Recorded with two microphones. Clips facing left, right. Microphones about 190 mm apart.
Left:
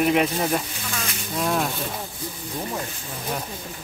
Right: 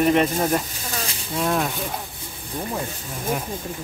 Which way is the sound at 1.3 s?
Centre (ahead or behind).